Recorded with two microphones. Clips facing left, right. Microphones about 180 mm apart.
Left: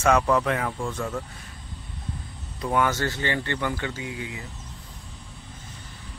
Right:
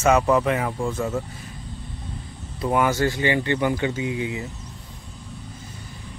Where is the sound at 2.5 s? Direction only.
10° right (ahead or behind).